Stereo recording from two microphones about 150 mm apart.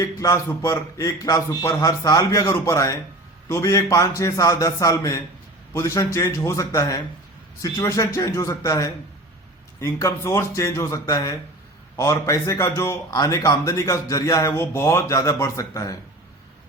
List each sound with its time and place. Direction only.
0.0 s a man's voice: 25° left (ahead or behind)